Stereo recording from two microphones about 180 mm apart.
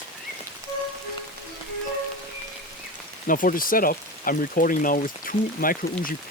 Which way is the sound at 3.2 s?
50° left (ahead or behind).